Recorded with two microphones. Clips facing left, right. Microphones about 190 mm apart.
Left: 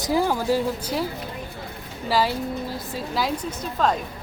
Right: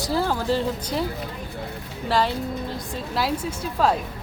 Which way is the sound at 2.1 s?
5° left (ahead or behind).